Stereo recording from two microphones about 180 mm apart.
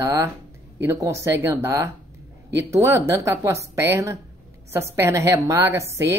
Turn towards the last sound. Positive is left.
turn(degrees=-15)  # may be behind; listen again after turning